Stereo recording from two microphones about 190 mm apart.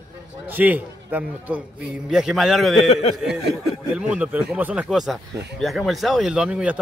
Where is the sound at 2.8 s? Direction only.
30° left (ahead or behind).